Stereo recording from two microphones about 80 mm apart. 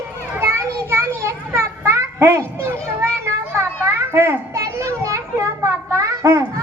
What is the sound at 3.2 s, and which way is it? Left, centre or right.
Children playing, right.